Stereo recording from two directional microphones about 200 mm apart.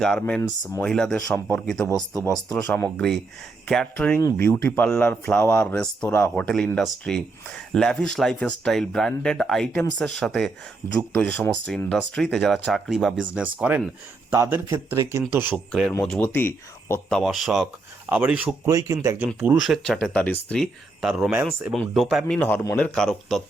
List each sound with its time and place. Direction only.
0.0 s speech: 5° left (ahead or behind)
4.2 s speech: 15° left (ahead or behind)
4.4 s speech: 5° left (ahead or behind)
15.9 s speech: 10° left (ahead or behind); by 19.3 s 15° right (ahead or behind)
19.4 s speech: 5° right (ahead or behind)